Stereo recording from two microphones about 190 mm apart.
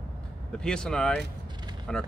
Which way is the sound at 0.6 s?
5° left (ahead or behind).